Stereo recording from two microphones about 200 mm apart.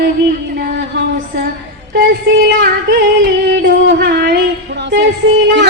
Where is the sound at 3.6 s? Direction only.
55° right (ahead or behind).